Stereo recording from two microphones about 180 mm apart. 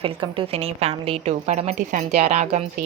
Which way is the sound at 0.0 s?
30° right (ahead or behind).